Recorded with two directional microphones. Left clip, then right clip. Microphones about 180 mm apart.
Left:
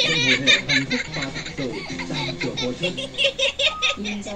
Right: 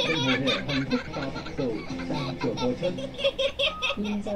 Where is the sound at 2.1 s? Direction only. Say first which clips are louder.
Left 2 dB; 25° right (ahead or behind).